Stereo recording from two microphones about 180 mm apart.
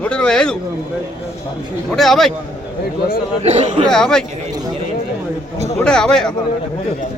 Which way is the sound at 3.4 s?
40° right (ahead or behind).